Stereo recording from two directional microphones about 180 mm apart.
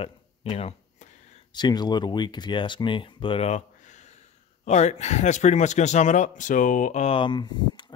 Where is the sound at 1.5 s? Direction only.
25° left (ahead or behind).